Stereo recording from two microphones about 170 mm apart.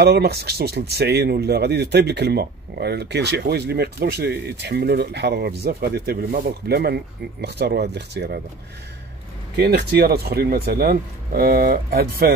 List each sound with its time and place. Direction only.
0.0 s speech: 75° right (ahead or behind)
9.6 s speech: 70° right (ahead or behind)